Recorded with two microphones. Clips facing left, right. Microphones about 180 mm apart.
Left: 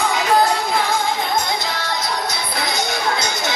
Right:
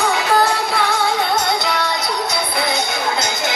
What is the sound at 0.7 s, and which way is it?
Music, 70° right (ahead or behind).